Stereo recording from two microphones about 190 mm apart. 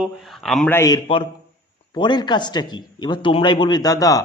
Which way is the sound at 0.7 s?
15° left (ahead or behind).